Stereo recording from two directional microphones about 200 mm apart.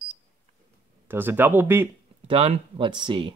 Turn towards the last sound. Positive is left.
turn(degrees=-25)  # may be behind; listen again after turning